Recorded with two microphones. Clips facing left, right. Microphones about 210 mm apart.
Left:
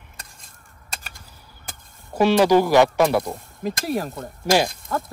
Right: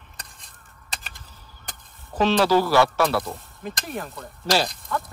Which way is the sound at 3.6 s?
35° left (ahead or behind).